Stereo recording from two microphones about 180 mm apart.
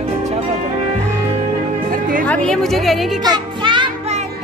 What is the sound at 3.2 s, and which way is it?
Music, 25° right (ahead or behind).